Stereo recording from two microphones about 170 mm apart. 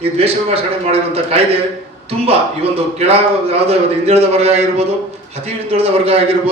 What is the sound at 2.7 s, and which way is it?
A man's voice, 35° right (ahead or behind).